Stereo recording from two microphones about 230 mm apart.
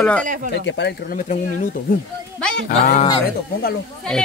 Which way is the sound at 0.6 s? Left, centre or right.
Left.